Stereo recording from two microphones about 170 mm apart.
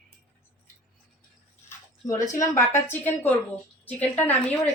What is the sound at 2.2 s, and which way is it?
Speech, 20° left (ahead or behind).